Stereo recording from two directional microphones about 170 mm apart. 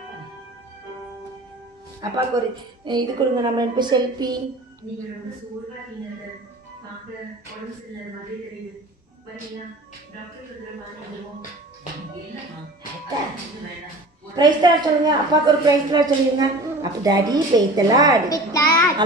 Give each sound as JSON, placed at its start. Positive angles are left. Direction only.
{"t": 2.0, "sound": "a woman's voice", "side_deg": -25}
{"t": 14.3, "sound": "a woman's voice", "side_deg": -25}
{"t": 18.3, "sound": "a sound", "side_deg": 15}